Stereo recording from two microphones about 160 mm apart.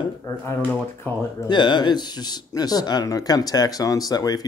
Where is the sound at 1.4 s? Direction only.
30° left (ahead or behind).